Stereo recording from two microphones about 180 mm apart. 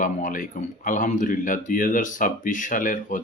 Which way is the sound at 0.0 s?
45° left (ahead or behind).